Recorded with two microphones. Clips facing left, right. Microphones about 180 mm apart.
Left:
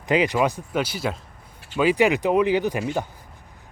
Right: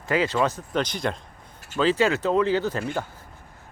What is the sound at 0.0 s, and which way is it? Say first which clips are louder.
Speech: left 2 dB; 15° left (ahead or behind).